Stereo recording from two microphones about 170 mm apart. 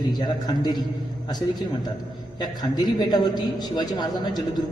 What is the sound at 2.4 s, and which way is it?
A man's voice, 25° left (ahead or behind).